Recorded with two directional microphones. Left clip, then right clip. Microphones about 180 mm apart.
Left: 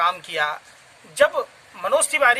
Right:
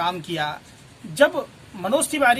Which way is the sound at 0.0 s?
10° left (ahead or behind).